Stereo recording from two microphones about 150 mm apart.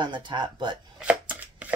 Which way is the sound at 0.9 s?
10° right (ahead or behind).